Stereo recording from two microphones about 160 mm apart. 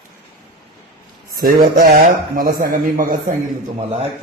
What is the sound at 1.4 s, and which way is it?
Speech, 70° right (ahead or behind).